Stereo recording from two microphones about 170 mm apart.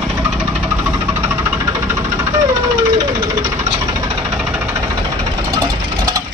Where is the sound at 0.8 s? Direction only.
10° right (ahead or behind).